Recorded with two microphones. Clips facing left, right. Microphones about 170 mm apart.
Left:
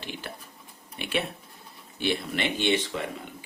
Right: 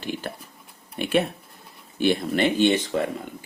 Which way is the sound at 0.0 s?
45° right (ahead or behind).